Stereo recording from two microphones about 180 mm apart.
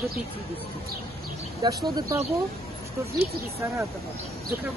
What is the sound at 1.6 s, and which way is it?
Speech, 20° right (ahead or behind).